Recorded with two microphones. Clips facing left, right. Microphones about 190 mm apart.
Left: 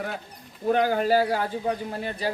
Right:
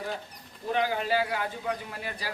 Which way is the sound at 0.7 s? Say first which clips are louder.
Left 6 dB; 45° left (ahead or behind).